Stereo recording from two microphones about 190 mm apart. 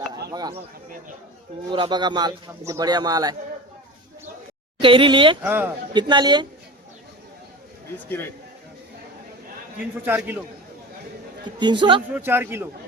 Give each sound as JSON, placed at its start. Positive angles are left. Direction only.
{"t": 0.3, "sound": "speech", "side_deg": -20}
{"t": 1.7, "sound": "speech", "side_deg": -25}
{"t": 4.8, "sound": "speech", "side_deg": -25}
{"t": 5.5, "sound": "a man's voice", "side_deg": -10}
{"t": 5.9, "sound": "speech", "side_deg": -25}
{"t": 10.1, "sound": "a man's voice", "side_deg": -10}
{"t": 11.6, "sound": "speech", "side_deg": -25}
{"t": 12.1, "sound": "a man's voice", "side_deg": -10}